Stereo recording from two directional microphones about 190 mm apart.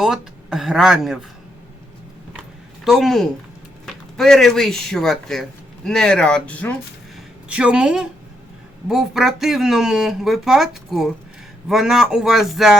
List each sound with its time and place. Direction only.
0.0 s speech: centre (ahead or behind)
2.8 s speech: centre (ahead or behind)
7.4 s speech: 5° right (ahead or behind)